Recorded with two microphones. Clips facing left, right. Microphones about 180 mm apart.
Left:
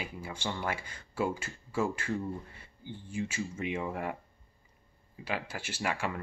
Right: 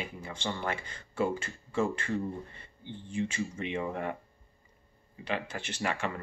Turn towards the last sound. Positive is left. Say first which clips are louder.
# right 1 dB
turn(degrees=10)  # may be behind; listen again after turning